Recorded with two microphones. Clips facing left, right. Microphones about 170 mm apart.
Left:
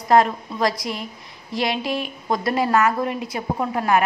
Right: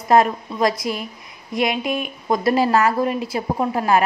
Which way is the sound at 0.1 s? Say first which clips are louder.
Right 1 dB; 25° right (ahead or behind).